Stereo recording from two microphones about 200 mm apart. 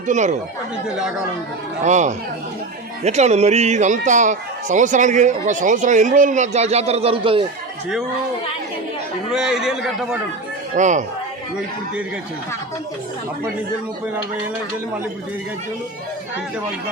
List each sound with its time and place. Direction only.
0.1 s speech: 35° right (ahead or behind)
0.9 s a man's voice: 5° right (ahead or behind)
1.8 s speech: 35° right (ahead or behind)
9.3 s a man's voice: 5° right (ahead or behind)
10.8 s speech: 35° right (ahead or behind)